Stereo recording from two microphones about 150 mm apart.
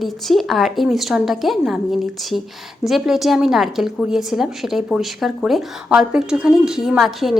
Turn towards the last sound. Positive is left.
turn(degrees=0)  # may be behind; listen again after turning